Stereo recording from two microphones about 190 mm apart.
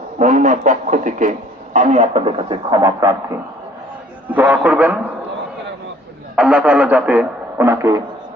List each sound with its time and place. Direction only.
0.2 s a man's voice: 40° right (ahead or behind); by 3.2 s 20° right (ahead or behind)
4.3 s a man's voice: 10° right (ahead or behind)
6.3 s a man's voice: 5° right (ahead or behind)